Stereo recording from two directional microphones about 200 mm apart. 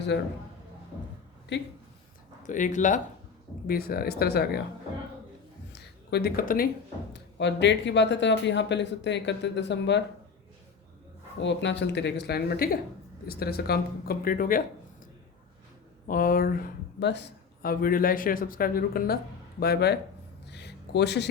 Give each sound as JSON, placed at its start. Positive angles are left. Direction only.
{"t": 0.1, "sound": "speech", "side_deg": 60}
{"t": 2.4, "sound": "speech", "side_deg": 40}
{"t": 3.7, "sound": "speech", "side_deg": 50}
{"t": 5.7, "sound": "a sound", "side_deg": 55}
{"t": 7.1, "sound": "speech", "side_deg": 60}
{"t": 11.3, "sound": "speech", "side_deg": 65}
{"t": 16.0, "sound": "speech", "side_deg": 45}
{"t": 20.5, "sound": "a sound", "side_deg": 60}